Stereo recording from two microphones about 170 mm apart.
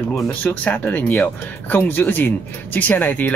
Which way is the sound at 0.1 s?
10° left (ahead or behind).